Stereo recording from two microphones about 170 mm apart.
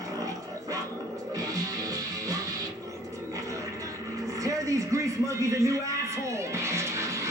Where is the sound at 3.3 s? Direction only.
20° right (ahead or behind).